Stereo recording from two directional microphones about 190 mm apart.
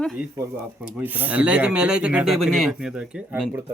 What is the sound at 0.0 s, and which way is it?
Speech, centre (ahead or behind).